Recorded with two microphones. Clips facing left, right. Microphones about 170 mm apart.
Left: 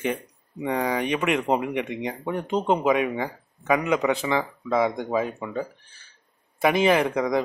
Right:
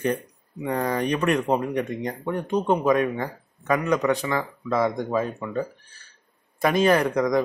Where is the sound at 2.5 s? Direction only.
20° left (ahead or behind).